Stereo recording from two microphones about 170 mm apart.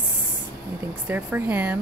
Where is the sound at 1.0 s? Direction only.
10° right (ahead or behind).